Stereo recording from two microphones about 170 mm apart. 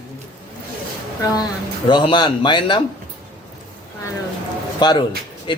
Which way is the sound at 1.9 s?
25° left (ahead or behind).